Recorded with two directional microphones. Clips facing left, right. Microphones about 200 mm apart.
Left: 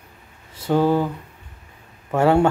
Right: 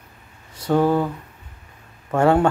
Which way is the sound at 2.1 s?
10° left (ahead or behind).